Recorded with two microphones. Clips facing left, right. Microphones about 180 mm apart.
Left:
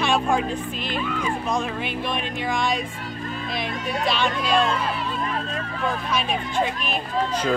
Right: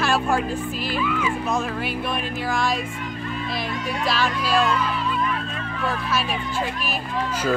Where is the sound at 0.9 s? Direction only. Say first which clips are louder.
Right 2 dB; 45° left (ahead or behind).